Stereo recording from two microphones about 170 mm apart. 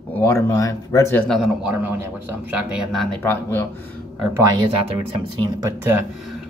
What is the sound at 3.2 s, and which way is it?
Speech, 15° left (ahead or behind).